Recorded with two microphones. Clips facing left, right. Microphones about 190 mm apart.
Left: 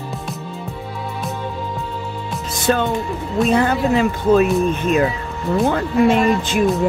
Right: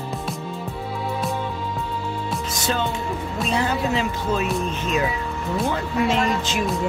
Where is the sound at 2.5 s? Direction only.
55° left (ahead or behind).